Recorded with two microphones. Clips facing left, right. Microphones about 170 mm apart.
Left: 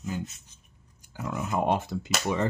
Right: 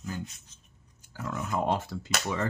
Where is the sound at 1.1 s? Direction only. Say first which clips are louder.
Left 2 dB; 15° left (ahead or behind).